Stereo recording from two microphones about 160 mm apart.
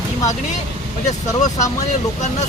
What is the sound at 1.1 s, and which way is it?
Speech, 45° left (ahead or behind).